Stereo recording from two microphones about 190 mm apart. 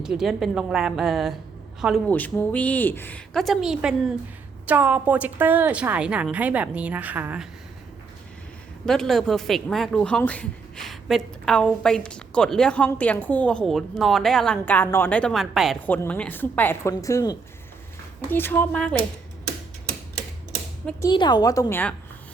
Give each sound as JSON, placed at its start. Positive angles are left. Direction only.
{"t": 0.0, "sound": "a woman's voice", "side_deg": -5}
{"t": 8.9, "sound": "a woman's voice", "side_deg": 0}
{"t": 21.0, "sound": "a woman's voice", "side_deg": 25}